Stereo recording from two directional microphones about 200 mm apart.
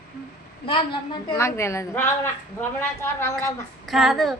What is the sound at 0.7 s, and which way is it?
Speech, 25° left (ahead or behind).